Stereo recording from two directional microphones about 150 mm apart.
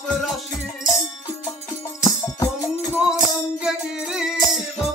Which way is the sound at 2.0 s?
20° left (ahead or behind).